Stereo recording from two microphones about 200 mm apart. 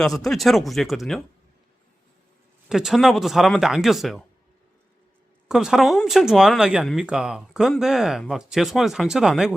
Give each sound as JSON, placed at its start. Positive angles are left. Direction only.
{"t": 0.0, "sound": "speech", "side_deg": 0}
{"t": 2.6, "sound": "speech", "side_deg": 0}
{"t": 5.5, "sound": "speech", "side_deg": 0}